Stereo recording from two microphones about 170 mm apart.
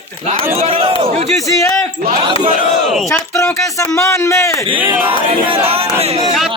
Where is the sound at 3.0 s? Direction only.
15° left (ahead or behind).